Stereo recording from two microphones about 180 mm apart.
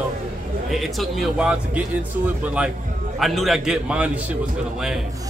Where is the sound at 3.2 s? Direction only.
Centre (ahead or behind).